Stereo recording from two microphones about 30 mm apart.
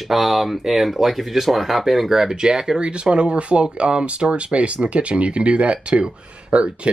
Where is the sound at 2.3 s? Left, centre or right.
Right.